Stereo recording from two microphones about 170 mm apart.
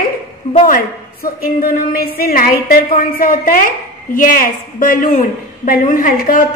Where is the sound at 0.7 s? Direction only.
60° left (ahead or behind).